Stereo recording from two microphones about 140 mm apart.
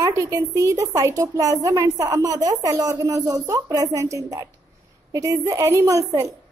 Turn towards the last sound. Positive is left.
turn(degrees=-25)  # may be behind; listen again after turning